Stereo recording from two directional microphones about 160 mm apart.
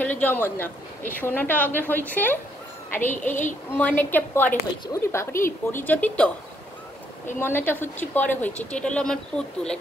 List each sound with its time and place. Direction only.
0.0 s speech: 10° left (ahead or behind)
7.3 s speech: 15° left (ahead or behind)